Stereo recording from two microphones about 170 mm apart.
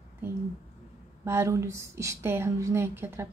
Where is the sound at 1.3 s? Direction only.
15° right (ahead or behind).